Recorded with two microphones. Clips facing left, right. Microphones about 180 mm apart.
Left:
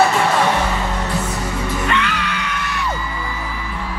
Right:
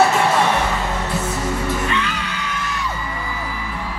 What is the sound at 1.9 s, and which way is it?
Music, 70° left (ahead or behind).